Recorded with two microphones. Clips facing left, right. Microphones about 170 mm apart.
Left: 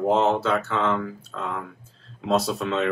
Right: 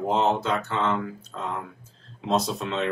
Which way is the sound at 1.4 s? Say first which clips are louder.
Left 1 dB; 15° right (ahead or behind).